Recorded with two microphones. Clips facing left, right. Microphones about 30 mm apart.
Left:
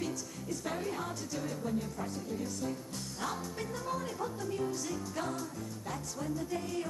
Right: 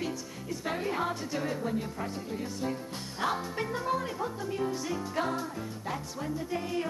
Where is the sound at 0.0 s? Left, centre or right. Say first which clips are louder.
Right 2 dB; right.